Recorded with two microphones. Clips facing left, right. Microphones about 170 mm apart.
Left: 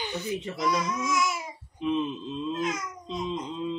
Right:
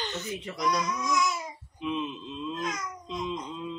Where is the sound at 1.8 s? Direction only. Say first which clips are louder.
Left 4 dB; 40° left (ahead or behind).